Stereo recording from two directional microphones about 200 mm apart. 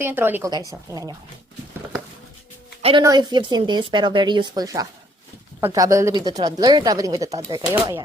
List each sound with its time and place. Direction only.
0.0 s speech: 10° right (ahead or behind)
3.0 s speech: 20° right (ahead or behind)